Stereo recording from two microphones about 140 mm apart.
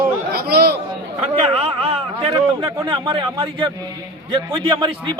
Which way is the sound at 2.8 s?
35° right (ahead or behind).